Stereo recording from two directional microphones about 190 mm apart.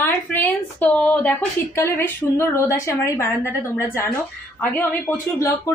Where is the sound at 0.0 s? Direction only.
10° left (ahead or behind).